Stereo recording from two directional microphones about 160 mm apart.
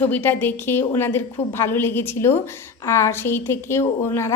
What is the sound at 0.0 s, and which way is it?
A woman's voice, 10° left (ahead or behind).